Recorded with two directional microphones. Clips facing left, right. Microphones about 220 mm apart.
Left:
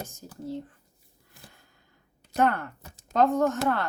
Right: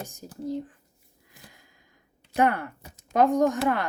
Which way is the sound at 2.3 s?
10° right (ahead or behind).